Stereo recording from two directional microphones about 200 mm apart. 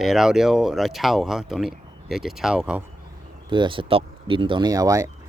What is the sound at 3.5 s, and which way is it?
Speech, 25° right (ahead or behind).